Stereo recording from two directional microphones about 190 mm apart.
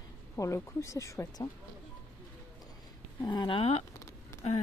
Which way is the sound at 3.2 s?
25° left (ahead or behind).